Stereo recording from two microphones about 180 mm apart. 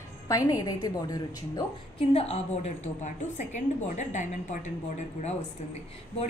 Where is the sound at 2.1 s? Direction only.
35° left (ahead or behind).